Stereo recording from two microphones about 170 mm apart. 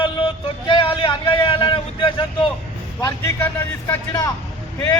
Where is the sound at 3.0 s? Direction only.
15° left (ahead or behind).